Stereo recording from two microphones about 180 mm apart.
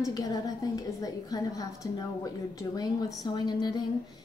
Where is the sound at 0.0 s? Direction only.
20° left (ahead or behind).